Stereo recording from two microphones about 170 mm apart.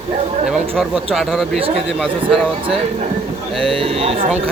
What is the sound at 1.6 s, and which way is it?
Speech, 35° right (ahead or behind).